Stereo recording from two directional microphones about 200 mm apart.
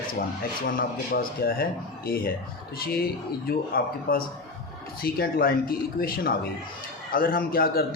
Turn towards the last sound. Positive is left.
turn(degrees=45)  # may be behind; listen again after turning